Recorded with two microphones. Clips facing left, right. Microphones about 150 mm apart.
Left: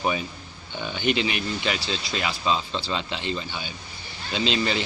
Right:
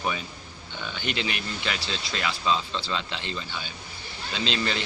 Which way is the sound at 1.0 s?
15° left (ahead or behind).